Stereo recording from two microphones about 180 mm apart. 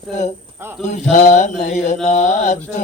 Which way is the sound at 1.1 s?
40° left (ahead or behind).